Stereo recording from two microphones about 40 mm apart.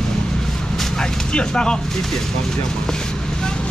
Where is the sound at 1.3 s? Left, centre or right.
Left.